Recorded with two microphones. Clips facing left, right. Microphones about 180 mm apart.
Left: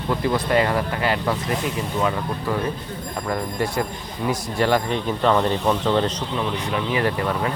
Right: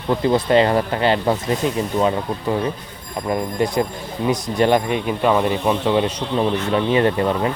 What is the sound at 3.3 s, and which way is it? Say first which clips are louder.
Speech: right 5 dB; 20° right (ahead or behind).